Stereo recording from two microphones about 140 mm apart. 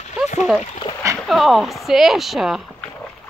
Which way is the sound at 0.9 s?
35° left (ahead or behind).